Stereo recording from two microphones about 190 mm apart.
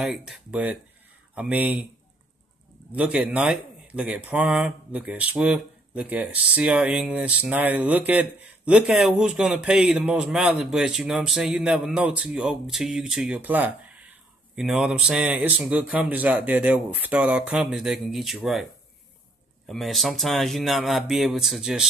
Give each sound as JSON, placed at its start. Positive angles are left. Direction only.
{"t": 0.0, "sound": "speech", "side_deg": 0}
{"t": 2.9, "sound": "speech", "side_deg": -5}